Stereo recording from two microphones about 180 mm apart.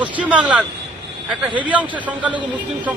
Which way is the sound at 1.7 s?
10° right (ahead or behind).